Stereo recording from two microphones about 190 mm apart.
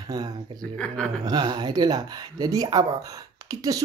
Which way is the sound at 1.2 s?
20° right (ahead or behind).